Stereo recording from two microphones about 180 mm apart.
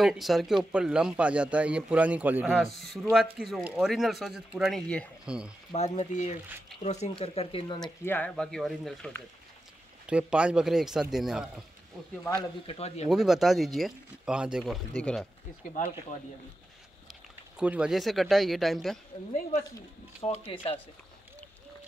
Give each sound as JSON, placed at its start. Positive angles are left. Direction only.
{"t": 0.0, "sound": "a man's voice", "side_deg": 0}
{"t": 5.7, "sound": "speech", "side_deg": 40}
{"t": 8.0, "sound": "speech", "side_deg": 10}
{"t": 12.6, "sound": "speech", "side_deg": 35}
{"t": 13.1, "sound": "speech", "side_deg": 0}
{"t": 17.6, "sound": "speech", "side_deg": -5}
{"t": 20.2, "sound": "speech", "side_deg": 30}